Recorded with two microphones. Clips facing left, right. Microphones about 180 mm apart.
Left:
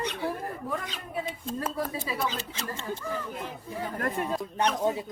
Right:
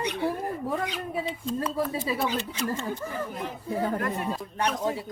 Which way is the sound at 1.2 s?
50° left (ahead or behind).